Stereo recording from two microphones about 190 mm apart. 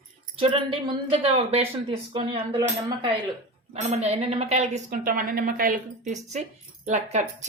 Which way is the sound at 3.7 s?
35° right (ahead or behind).